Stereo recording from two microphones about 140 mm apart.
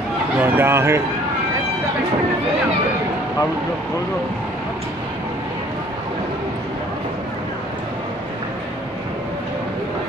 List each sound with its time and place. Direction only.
0.4 s speech: 15° right (ahead or behind)